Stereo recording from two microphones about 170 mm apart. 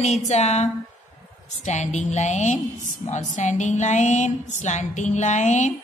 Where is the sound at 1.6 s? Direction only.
45° left (ahead or behind).